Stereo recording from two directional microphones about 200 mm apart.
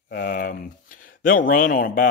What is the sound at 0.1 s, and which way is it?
A man's voice, 45° left (ahead or behind).